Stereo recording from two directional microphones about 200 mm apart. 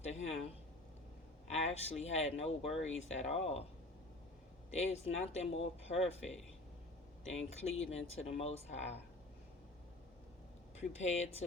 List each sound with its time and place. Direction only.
0.0 s a sound: 30° left (ahead or behind)
1.5 s speech: 30° left (ahead or behind)
4.7 s speech: 30° left (ahead or behind)
10.8 s speech: 35° left (ahead or behind)